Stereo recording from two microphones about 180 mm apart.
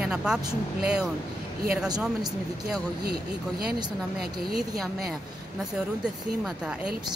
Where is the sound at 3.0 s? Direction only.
60° right (ahead or behind).